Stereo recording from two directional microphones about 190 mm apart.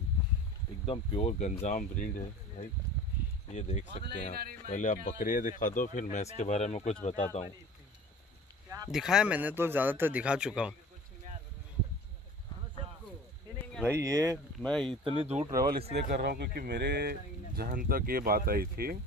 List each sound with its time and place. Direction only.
0.8 s speech: 30° left (ahead or behind)
1.6 s speech: 40° left (ahead or behind)
8.6 s a sound: 15° right (ahead or behind)
8.9 s speech: 5° right (ahead or behind)
13.8 s speech: 15° right (ahead or behind)
14.6 s speech: 5° left (ahead or behind)
15.2 s speech: 35° right (ahead or behind)
15.5 s speech: 50° right (ahead or behind)